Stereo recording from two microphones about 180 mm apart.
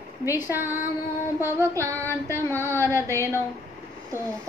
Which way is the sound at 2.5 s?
15° left (ahead or behind).